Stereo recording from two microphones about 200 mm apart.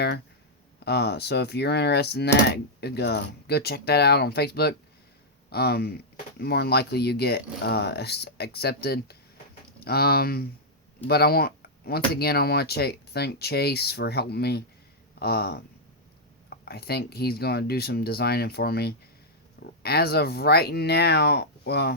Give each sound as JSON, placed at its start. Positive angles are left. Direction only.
{"t": 0.9, "sound": "speech", "side_deg": 55}